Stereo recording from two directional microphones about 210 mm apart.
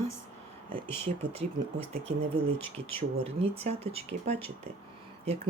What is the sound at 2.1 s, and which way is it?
Speech, 30° right (ahead or behind).